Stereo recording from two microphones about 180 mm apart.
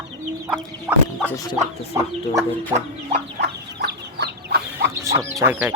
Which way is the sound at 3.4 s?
65° right (ahead or behind).